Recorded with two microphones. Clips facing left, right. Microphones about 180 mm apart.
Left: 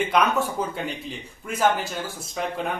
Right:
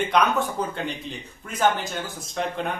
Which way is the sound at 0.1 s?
5° left (ahead or behind).